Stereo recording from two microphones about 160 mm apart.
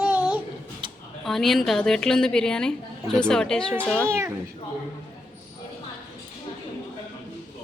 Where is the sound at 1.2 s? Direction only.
Centre (ahead or behind).